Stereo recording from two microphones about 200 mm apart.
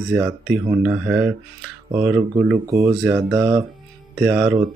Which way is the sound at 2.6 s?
15° right (ahead or behind).